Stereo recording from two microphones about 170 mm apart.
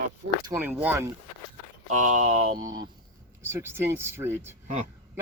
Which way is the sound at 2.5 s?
25° right (ahead or behind).